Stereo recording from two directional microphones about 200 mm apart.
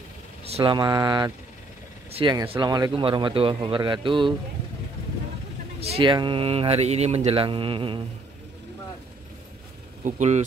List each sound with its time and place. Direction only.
0.5 s speech: 25° right (ahead or behind)
5.8 s speech: 30° right (ahead or behind)
10.0 s speech: 35° right (ahead or behind)